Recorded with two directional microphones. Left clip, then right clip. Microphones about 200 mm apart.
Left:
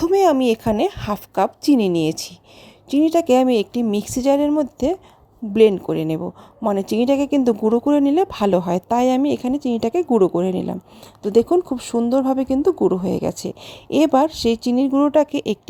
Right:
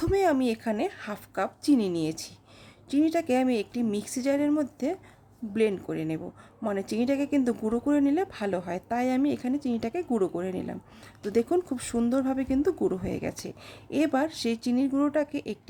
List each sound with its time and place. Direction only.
0.0 s a woman's voice: 30° left (ahead or behind)
11.8 s a woman's voice: 20° left (ahead or behind)